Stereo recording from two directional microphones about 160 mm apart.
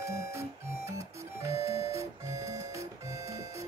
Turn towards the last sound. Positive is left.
turn(degrees=-20)  # may be behind; listen again after turning